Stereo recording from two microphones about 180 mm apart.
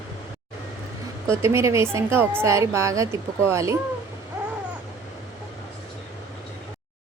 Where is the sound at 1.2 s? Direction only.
15° right (ahead or behind).